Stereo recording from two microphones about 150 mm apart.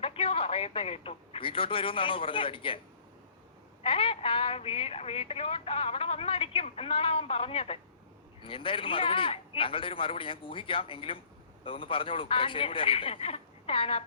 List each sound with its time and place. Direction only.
0.0 s speech: 40° left (ahead or behind)
3.8 s a woman's voice: 40° left (ahead or behind)